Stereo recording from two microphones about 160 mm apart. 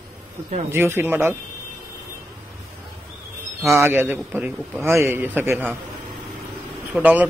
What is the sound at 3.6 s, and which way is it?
A man's voice, 15° right (ahead or behind).